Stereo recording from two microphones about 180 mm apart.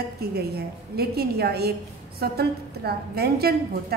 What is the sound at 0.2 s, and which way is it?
A woman's voice, 60° right (ahead or behind).